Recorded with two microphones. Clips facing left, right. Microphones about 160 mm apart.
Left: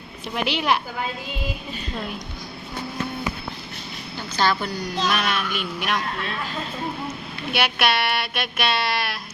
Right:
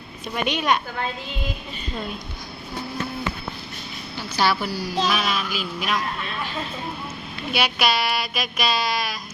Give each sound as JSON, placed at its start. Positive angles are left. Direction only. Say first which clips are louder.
{"t": 0.3, "sound": "a woman's voice", "louder": "even", "side_deg": 75}
{"t": 4.2, "sound": "a woman's voice", "louder": "even", "side_deg": -10}
{"t": 7.5, "sound": "speech", "louder": "even", "side_deg": 0}